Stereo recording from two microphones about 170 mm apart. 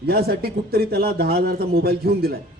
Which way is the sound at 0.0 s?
65° right (ahead or behind).